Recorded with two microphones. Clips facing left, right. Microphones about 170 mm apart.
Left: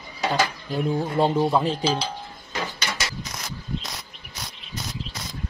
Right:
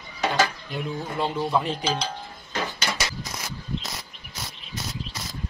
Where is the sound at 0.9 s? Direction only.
45° left (ahead or behind).